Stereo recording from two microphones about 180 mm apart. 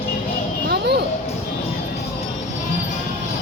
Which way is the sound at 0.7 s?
65° right (ahead or behind).